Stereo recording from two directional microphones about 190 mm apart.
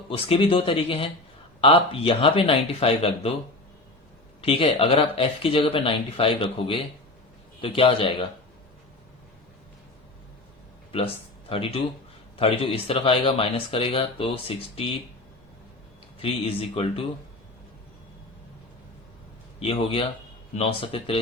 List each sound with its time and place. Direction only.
0.1 s speech: 30° left (ahead or behind)
4.4 s speech: 30° left (ahead or behind)
10.9 s speech: 30° left (ahead or behind)
16.2 s speech: 30° left (ahead or behind)
19.5 s speech: 30° left (ahead or behind)